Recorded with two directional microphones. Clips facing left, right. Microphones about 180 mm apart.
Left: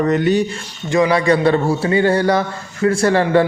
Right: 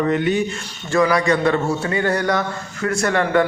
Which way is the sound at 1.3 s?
30° left (ahead or behind).